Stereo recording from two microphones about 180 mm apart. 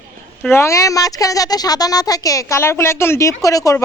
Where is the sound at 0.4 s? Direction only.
15° left (ahead or behind).